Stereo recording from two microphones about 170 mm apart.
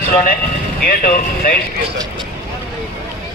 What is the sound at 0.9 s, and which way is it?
Speech, 60° left (ahead or behind).